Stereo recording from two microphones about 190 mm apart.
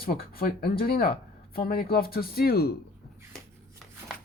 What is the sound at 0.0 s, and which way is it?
Speech, 50° left (ahead or behind).